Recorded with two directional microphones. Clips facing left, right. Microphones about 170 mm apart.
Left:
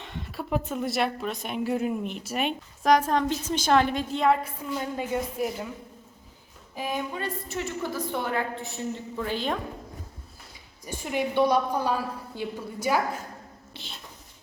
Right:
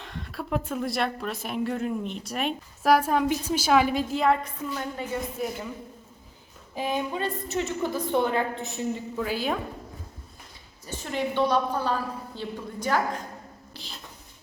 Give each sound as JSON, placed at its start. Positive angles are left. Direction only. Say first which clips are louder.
{"t": 0.0, "sound": "a woman's voice", "louder": "even", "side_deg": 0}
{"t": 4.7, "sound": "a woman's voice", "louder": "left 4 dB", "side_deg": 20}
{"t": 6.7, "sound": "a woman's voice", "louder": "right 3 dB", "side_deg": -25}
{"t": 9.1, "sound": "a woman's voice", "louder": "even", "side_deg": -5}
{"t": 10.8, "sound": "a woman's voice", "louder": "left 1 dB", "side_deg": 10}
{"t": 13.7, "sound": "a sound", "louder": "even", "side_deg": 0}